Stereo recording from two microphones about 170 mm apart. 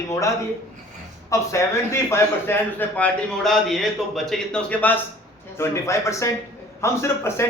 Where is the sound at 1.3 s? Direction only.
15° left (ahead or behind).